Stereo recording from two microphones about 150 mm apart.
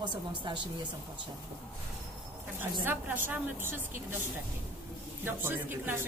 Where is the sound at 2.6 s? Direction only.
15° right (ahead or behind).